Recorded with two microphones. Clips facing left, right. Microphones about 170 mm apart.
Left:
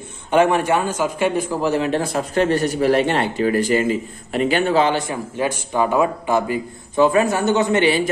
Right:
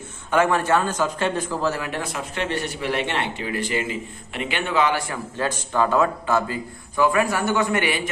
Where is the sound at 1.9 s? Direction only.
35° left (ahead or behind).